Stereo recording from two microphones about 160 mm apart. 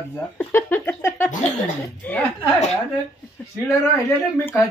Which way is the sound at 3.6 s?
15° left (ahead or behind).